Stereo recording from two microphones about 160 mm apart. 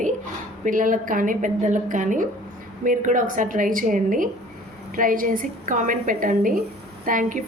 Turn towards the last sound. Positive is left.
turn(degrees=-55)  # may be behind; listen again after turning